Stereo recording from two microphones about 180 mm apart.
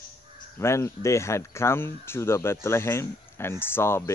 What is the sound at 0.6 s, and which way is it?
Speech, 15° left (ahead or behind).